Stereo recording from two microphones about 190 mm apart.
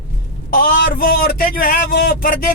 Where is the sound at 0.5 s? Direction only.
50° left (ahead or behind).